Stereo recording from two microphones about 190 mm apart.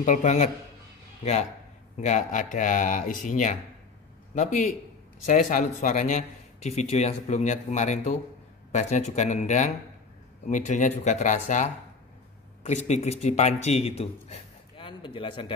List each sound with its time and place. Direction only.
0.0 s a man's voice: 40° left (ahead or behind)